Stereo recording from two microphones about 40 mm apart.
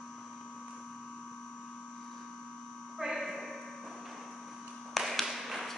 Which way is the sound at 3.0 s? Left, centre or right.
Centre.